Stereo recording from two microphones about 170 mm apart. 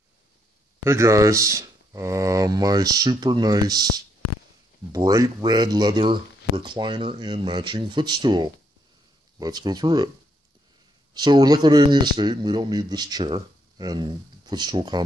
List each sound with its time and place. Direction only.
0.8 s speech: 15° right (ahead or behind)
4.9 s speech: 20° right (ahead or behind)
11.1 s speech: 25° right (ahead or behind)